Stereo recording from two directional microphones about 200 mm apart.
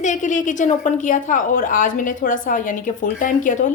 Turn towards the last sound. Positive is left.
turn(degrees=40)  # may be behind; listen again after turning